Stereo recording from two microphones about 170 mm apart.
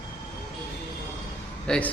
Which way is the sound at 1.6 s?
5° left (ahead or behind).